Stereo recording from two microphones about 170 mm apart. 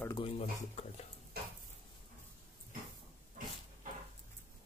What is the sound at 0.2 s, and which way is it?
Speech, 35° left (ahead or behind).